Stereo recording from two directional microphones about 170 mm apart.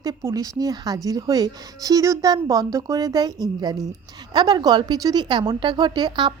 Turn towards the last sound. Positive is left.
turn(degrees=-25)  # may be behind; listen again after turning